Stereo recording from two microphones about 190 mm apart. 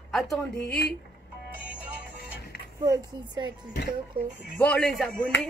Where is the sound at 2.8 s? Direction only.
20° right (ahead or behind).